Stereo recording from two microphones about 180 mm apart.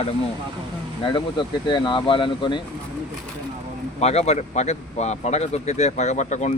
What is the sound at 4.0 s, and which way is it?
Speech, 35° left (ahead or behind).